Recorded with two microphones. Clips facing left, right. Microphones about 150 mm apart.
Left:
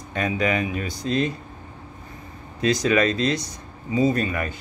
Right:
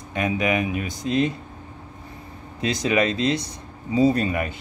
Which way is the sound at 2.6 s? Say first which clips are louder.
Left 2 dB; 25° right (ahead or behind).